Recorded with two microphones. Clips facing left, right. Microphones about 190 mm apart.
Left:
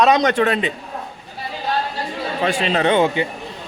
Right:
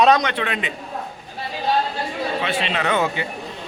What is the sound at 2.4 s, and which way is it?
Speech, 40° left (ahead or behind).